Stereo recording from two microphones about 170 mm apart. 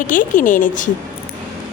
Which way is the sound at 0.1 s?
50° left (ahead or behind).